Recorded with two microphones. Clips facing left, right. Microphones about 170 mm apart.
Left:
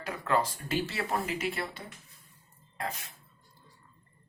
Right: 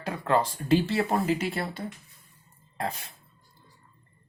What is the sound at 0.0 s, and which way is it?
Speech, 30° right (ahead or behind).